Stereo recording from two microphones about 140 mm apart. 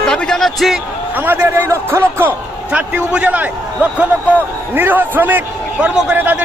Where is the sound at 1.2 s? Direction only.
15° right (ahead or behind).